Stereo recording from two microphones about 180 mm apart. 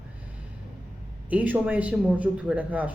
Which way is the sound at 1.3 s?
10° right (ahead or behind).